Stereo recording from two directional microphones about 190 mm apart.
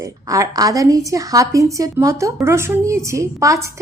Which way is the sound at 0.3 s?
20° right (ahead or behind).